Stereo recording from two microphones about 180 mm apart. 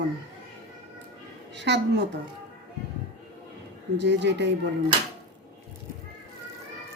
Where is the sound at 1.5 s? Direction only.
75° right (ahead or behind).